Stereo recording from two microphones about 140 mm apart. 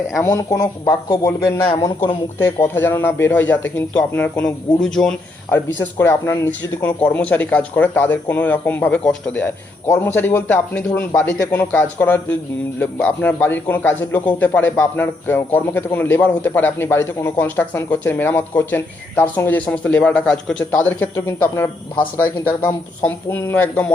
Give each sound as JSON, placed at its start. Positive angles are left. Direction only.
{"t": 0.2, "sound": "speech", "side_deg": 20}
{"t": 5.5, "sound": "speech", "side_deg": 15}